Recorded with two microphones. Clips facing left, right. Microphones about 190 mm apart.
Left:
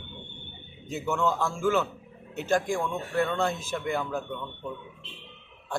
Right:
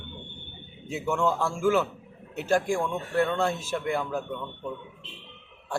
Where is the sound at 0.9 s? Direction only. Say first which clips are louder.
Right 1 dB; 10° right (ahead or behind).